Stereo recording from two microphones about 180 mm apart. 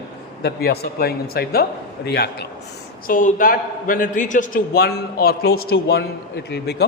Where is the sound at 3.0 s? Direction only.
50° left (ahead or behind).